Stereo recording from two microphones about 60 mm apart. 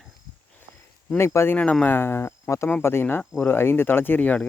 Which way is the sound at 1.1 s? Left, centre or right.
Left.